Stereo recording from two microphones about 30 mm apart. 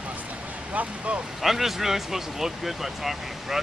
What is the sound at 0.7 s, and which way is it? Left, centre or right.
Speech, right.